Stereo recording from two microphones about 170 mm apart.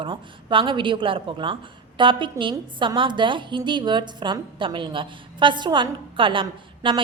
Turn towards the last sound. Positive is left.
turn(degrees=-30)  # may be behind; listen again after turning